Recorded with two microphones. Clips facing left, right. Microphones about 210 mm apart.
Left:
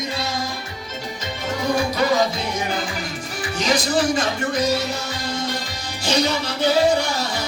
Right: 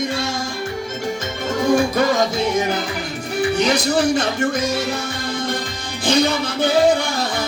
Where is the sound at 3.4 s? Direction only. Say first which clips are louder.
Right 4 dB; 60° right (ahead or behind).